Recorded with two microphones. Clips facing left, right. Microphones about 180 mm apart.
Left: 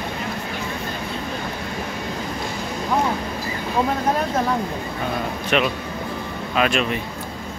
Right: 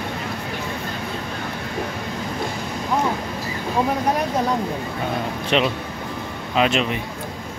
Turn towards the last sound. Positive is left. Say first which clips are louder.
# right 1 dB
turn(degrees=-20)  # may be behind; listen again after turning